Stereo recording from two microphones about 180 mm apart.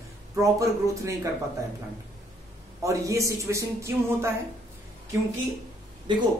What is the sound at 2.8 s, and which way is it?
A man's voice, 15° right (ahead or behind).